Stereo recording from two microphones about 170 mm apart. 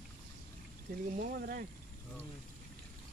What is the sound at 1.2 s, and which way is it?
Speech, 60° right (ahead or behind).